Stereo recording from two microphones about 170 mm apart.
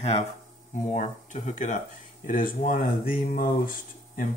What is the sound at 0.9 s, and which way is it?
Speech, 45° left (ahead or behind).